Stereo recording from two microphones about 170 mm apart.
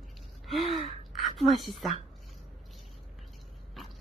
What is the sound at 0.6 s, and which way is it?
Gasp, 40° left (ahead or behind).